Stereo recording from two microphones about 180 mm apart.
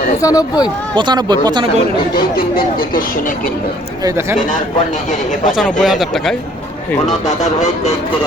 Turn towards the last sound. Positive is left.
turn(degrees=40)  # may be behind; listen again after turning